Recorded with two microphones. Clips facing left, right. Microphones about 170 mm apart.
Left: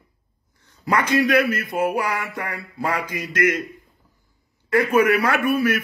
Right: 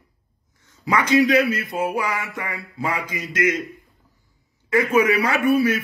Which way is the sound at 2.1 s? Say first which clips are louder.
Left 1 dB; 65° left (ahead or behind).